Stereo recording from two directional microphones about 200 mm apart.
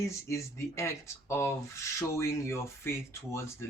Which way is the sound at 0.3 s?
15° left (ahead or behind).